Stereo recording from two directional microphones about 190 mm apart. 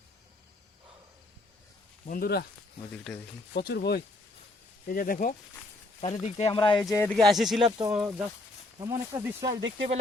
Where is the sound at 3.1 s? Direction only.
5° left (ahead or behind).